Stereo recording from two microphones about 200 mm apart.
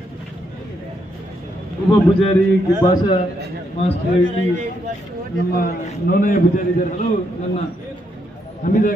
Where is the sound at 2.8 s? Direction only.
20° left (ahead or behind).